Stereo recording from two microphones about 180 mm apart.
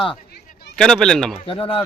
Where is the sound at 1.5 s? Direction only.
30° left (ahead or behind).